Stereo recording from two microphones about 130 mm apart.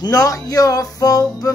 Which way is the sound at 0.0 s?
30° left (ahead or behind).